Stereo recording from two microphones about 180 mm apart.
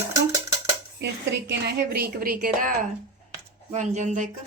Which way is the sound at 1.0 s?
75° right (ahead or behind).